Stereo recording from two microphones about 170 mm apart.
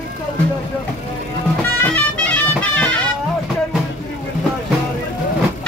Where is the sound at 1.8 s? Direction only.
10° left (ahead or behind).